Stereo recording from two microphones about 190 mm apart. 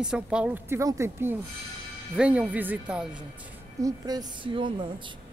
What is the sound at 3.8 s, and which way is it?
A woman's voice, 20° right (ahead or behind).